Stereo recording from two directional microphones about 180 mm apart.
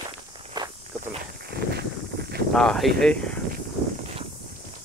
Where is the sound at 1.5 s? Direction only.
65° right (ahead or behind).